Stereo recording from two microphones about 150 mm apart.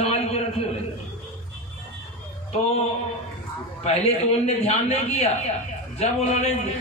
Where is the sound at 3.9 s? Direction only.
45° left (ahead or behind).